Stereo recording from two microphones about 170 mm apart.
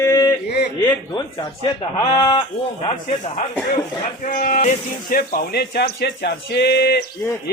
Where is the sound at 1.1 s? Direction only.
25° left (ahead or behind).